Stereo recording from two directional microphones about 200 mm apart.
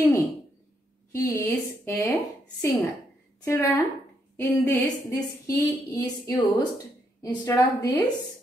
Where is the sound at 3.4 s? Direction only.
15° left (ahead or behind).